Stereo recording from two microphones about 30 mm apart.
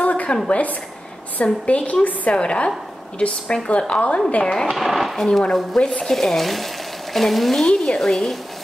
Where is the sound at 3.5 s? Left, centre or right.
Left.